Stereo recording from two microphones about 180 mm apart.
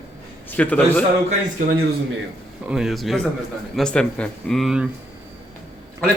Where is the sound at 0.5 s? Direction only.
10° left (ahead or behind).